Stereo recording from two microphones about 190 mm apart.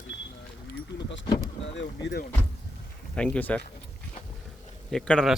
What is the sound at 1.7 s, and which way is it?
Speech, 70° left (ahead or behind).